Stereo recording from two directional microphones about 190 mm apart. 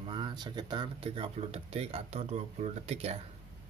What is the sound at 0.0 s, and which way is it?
Speech, 25° right (ahead or behind).